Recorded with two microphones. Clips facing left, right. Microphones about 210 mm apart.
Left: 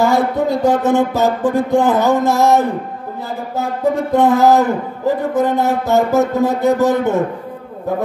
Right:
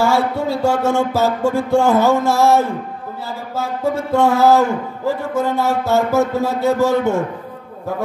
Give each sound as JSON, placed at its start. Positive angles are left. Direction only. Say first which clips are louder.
{"t": 0.0, "sound": "a man's voice", "louder": "left 2 dB", "side_deg": 20}